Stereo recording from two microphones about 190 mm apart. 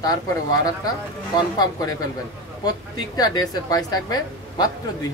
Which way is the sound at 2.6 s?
20° left (ahead or behind).